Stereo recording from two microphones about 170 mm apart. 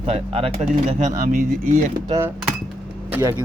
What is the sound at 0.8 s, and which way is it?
Speech, 50° right (ahead or behind).